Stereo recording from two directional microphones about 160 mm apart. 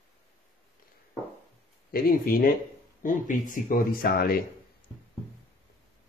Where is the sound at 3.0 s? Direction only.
55° left (ahead or behind); by 4.5 s 70° left (ahead or behind).